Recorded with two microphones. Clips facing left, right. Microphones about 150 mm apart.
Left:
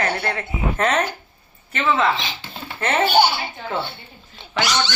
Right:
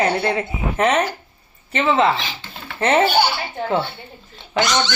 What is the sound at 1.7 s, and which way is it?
Speech, 25° right (ahead or behind).